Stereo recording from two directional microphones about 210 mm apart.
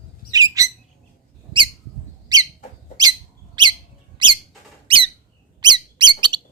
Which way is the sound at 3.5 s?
20° right (ahead or behind).